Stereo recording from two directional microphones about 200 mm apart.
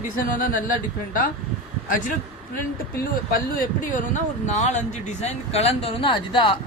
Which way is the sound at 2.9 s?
45° left (ahead or behind).